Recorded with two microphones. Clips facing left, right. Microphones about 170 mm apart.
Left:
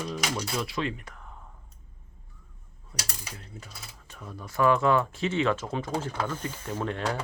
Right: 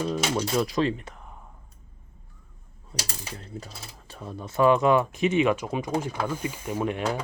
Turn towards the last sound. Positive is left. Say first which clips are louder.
# right 3 dB
turn(degrees=-15)  # may be behind; listen again after turning